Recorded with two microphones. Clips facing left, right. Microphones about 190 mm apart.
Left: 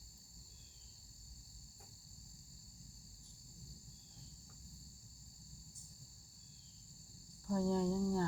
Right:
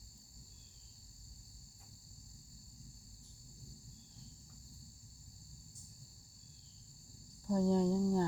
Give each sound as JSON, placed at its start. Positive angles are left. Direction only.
{"t": 7.4, "sound": "cricket", "side_deg": -20}